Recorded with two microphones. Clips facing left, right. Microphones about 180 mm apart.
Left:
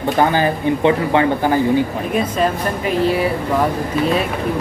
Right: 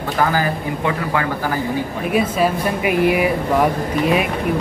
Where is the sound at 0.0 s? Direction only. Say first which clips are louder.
Left 3 dB; 25° left (ahead or behind).